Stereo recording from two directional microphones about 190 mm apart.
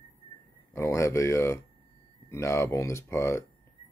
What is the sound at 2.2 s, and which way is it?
Speech, 15° left (ahead or behind).